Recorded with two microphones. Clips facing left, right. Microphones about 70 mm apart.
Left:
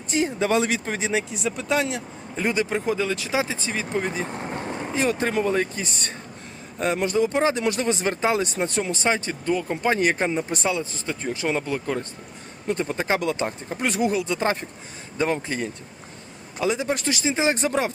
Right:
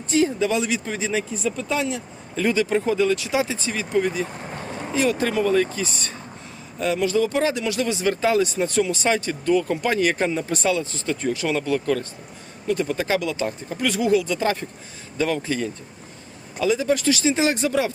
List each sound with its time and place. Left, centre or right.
0.1 s speech: left
1.3 s speech: centre; by 17.9 s left